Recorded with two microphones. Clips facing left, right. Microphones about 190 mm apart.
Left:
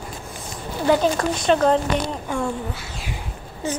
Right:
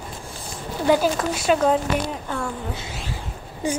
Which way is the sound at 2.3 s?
15° left (ahead or behind).